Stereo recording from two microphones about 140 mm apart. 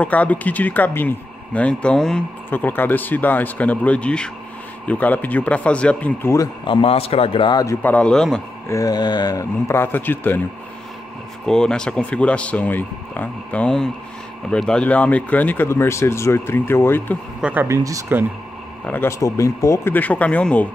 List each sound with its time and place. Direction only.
0.0 s speech: 10° left (ahead or behind)
6.6 s a man's voice: 40° left (ahead or behind)
7.6 s speech: 10° left (ahead or behind)
8.6 s a man's voice: 25° left (ahead or behind)
11.4 s speech: 5° left (ahead or behind)
17.4 s speech: 10° right (ahead or behind)
17.6 s speech: 20° right (ahead or behind)
18.9 s speech: 15° left (ahead or behind)